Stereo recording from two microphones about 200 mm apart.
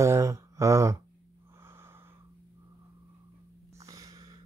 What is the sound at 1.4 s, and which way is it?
Wheeze, 15° right (ahead or behind).